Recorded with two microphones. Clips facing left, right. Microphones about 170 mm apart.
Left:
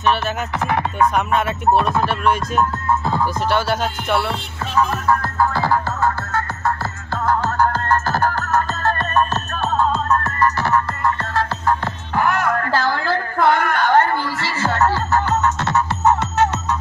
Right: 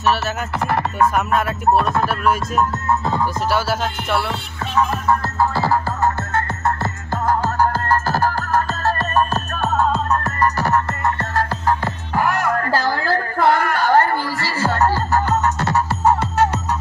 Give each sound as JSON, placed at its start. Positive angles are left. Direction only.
{"t": 0.7, "sound": "music", "side_deg": 0}
{"t": 6.3, "sound": "music", "side_deg": -25}
{"t": 7.2, "sound": "music", "side_deg": -10}
{"t": 10.2, "sound": "music", "side_deg": -40}
{"t": 11.8, "sound": "music", "side_deg": -5}
{"t": 12.6, "sound": "music", "side_deg": -40}
{"t": 13.4, "sound": "a sound", "side_deg": -5}
{"t": 15.4, "sound": "music", "side_deg": -35}